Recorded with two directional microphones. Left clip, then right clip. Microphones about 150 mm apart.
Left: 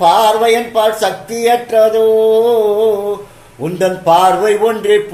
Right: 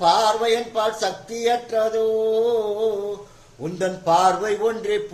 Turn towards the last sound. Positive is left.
turn(degrees=10)  # may be behind; listen again after turning